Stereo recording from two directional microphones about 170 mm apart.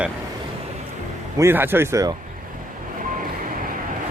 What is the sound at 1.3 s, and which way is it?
Speech, 15° right (ahead or behind).